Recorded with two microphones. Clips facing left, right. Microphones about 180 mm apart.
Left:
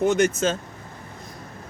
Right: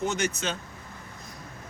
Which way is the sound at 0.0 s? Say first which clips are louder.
Left 9 dB; 50° left (ahead or behind).